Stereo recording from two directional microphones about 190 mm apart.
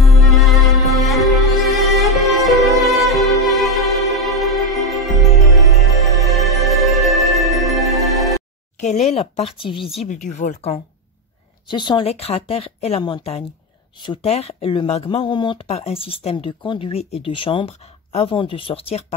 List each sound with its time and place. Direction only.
0.0 s music: centre (ahead or behind)
8.8 s speech: 35° left (ahead or behind)
11.7 s speech: 25° left (ahead or behind)